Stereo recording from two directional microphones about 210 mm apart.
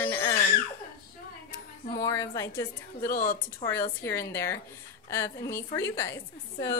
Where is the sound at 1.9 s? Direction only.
15° left (ahead or behind).